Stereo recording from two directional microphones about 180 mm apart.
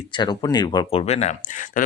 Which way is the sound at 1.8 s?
50° left (ahead or behind).